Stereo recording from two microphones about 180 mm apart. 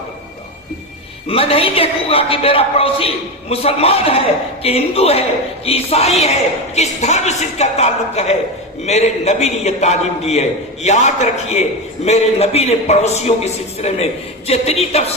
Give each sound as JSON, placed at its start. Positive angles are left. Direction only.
{"t": 1.3, "sound": "a man's voice", "side_deg": 30}